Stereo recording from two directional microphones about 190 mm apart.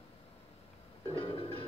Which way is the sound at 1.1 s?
30° left (ahead or behind).